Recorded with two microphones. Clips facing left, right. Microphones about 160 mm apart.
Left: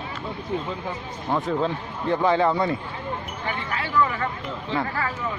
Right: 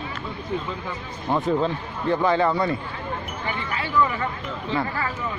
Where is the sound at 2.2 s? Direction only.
15° left (ahead or behind).